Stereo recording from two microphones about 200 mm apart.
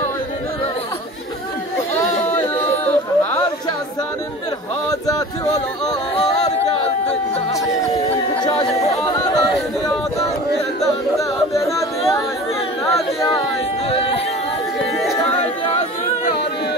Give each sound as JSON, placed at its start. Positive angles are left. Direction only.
{"t": 8.5, "sound": "chatter", "side_deg": 15}
{"t": 11.1, "sound": "music", "side_deg": 15}
{"t": 13.8, "sound": "a sound", "side_deg": 30}